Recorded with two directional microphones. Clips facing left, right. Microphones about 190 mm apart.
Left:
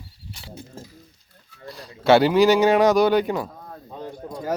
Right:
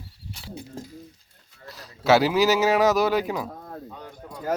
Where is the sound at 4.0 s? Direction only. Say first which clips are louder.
Left 6 dB; 35° left (ahead or behind).